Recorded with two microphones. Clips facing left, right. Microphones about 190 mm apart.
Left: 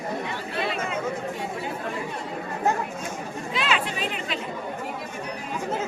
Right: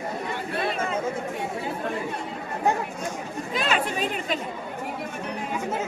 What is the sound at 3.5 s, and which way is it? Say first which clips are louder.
Speech: right 1 dB; 45° right (ahead or behind).